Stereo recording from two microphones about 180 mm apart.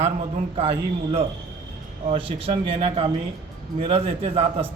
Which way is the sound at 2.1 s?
30° right (ahead or behind).